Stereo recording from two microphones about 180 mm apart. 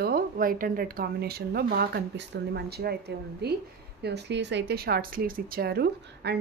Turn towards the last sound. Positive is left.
turn(degrees=-65)  # may be behind; listen again after turning